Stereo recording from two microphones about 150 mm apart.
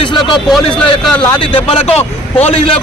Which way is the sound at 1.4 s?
35° left (ahead or behind).